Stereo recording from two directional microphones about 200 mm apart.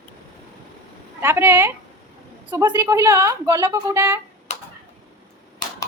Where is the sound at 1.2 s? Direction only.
10° right (ahead or behind).